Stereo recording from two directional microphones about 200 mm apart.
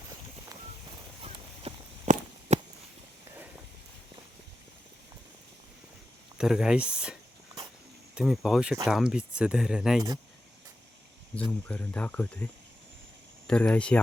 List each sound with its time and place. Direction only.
1.2 s a sound: 30° right (ahead or behind)
6.3 s speech: 5° right (ahead or behind)
11.7 s speech: 5° left (ahead or behind)
13.5 s speech: 5° left (ahead or behind)